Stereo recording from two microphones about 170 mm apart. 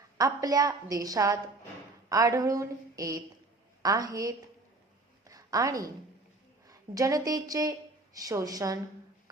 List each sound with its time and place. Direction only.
0.2 s a woman's voice: 20° right (ahead or behind)
5.2 s a sound: 20° right (ahead or behind)
6.7 s a woman's voice: 20° right (ahead or behind)